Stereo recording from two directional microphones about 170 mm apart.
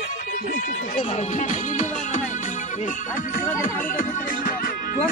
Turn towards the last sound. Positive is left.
turn(degrees=50)  # may be behind; listen again after turning